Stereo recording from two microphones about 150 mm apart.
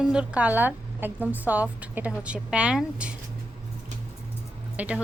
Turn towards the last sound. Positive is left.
turn(degrees=-10)  # may be behind; listen again after turning